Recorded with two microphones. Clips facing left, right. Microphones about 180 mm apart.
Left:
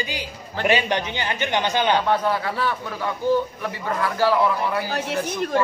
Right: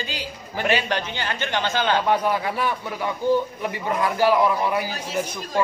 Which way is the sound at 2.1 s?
15° right (ahead or behind).